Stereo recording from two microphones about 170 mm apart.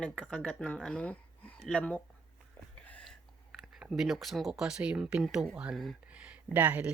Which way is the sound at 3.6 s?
5° right (ahead or behind).